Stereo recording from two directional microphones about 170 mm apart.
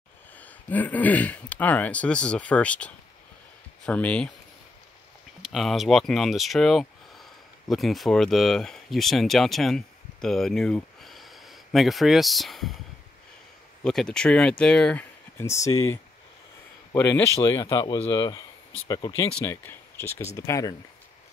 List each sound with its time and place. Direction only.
0.4 s speech: 10° left (ahead or behind)
5.4 s speech: centre (ahead or behind)
13.8 s speech: 5° left (ahead or behind); by 20.7 s 20° left (ahead or behind)